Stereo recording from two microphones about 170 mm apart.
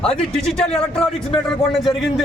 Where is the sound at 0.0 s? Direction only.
Centre (ahead or behind).